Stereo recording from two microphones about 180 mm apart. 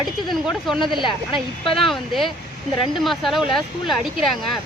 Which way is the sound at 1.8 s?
Centre (ahead or behind).